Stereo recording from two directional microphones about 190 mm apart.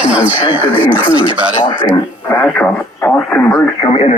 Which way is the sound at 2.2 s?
10° left (ahead or behind).